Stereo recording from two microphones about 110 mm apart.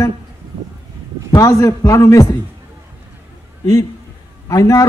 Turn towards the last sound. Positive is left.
turn(degrees=35)  # may be behind; listen again after turning